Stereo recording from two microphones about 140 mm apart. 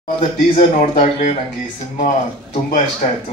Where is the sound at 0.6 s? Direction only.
55° left (ahead or behind).